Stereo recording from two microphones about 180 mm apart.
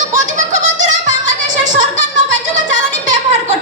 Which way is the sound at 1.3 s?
45° right (ahead or behind).